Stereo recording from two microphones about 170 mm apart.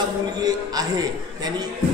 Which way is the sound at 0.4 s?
20° right (ahead or behind).